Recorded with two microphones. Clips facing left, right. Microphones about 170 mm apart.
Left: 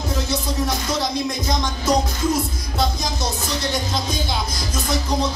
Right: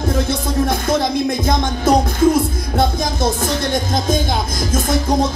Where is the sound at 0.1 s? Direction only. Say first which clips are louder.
Right 4 dB; 55° right (ahead or behind).